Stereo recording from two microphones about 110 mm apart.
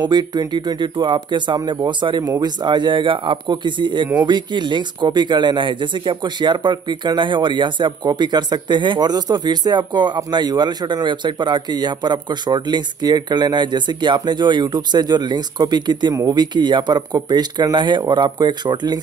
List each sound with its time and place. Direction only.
0.0 s speech: 40° right (ahead or behind)